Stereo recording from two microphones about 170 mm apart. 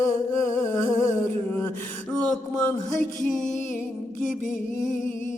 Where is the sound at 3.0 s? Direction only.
Centre (ahead or behind).